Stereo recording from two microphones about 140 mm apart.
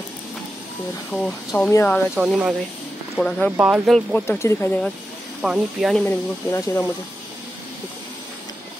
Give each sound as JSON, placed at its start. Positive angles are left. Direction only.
{"t": 1.1, "sound": "speech", "side_deg": 5}
{"t": 1.7, "sound": "speech", "side_deg": 20}
{"t": 2.1, "sound": "speech", "side_deg": -5}
{"t": 3.5, "sound": "speech", "side_deg": -10}
{"t": 3.8, "sound": "speech", "side_deg": 0}
{"t": 4.3, "sound": "speech", "side_deg": 20}
{"t": 5.4, "sound": "speech", "side_deg": 0}
{"t": 6.0, "sound": "speech", "side_deg": 20}